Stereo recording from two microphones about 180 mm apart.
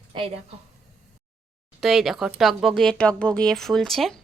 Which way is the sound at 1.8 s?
Centre (ahead or behind).